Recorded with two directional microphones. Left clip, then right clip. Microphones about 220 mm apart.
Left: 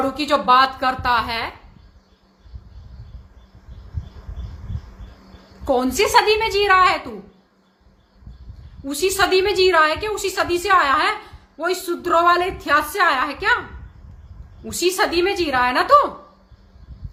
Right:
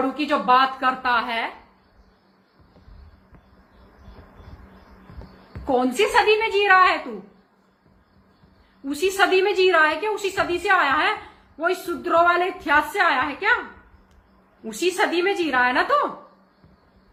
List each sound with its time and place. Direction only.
0.0 s a woman's voice: 15° left (ahead or behind)
5.6 s a woman's voice: 15° left (ahead or behind)
8.9 s a woman's voice: 15° left (ahead or behind)
14.6 s a woman's voice: 15° left (ahead or behind)